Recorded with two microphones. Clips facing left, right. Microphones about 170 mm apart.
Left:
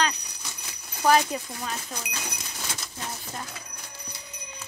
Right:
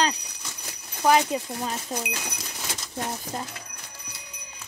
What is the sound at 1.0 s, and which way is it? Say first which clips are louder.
Speech: right 1 dB; 15° right (ahead or behind).